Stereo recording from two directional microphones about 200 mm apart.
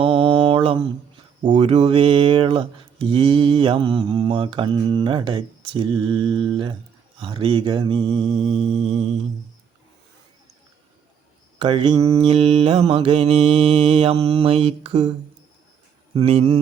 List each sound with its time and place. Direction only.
0.0 s mantra: 25° right (ahead or behind)
1.4 s speech: 25° right (ahead or behind)
11.6 s speech: 25° right (ahead or behind)
12.1 s speech: 30° right (ahead or behind)
16.1 s speech: 30° right (ahead or behind)